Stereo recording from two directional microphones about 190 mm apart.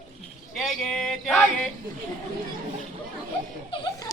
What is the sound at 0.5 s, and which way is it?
Speech, centre (ahead or behind).